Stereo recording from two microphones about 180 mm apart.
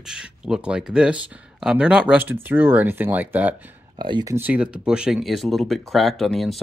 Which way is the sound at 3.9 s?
25° right (ahead or behind).